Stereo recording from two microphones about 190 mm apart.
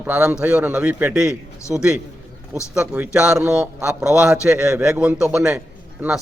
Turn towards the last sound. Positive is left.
turn(degrees=-5)  # may be behind; listen again after turning